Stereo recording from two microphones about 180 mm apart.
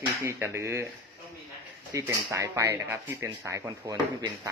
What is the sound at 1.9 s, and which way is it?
Speech, 15° right (ahead or behind).